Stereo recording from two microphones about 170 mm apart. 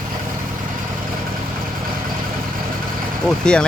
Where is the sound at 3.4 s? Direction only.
5° left (ahead or behind).